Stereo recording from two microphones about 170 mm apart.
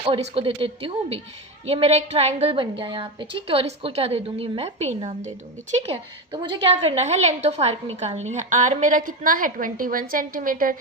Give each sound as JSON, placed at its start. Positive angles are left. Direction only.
{"t": 0.0, "sound": "a woman's voice", "side_deg": -30}